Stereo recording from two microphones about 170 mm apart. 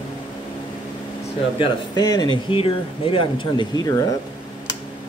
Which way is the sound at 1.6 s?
25° left (ahead or behind).